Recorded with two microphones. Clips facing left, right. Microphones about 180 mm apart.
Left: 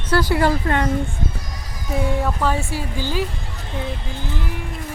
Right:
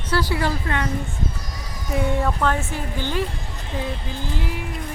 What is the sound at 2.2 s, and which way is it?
Speech, 5° left (ahead or behind).